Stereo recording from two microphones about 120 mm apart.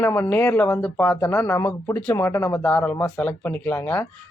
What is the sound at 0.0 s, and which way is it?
Speech, 20° left (ahead or behind).